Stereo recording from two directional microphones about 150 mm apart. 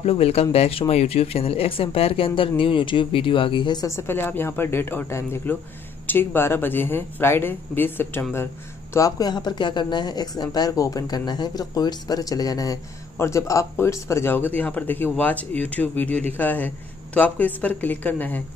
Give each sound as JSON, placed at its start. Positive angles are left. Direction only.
{"t": 0.0, "sound": "a man's voice", "side_deg": 40}